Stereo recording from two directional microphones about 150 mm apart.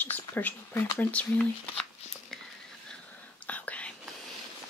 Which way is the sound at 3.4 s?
10° left (ahead or behind).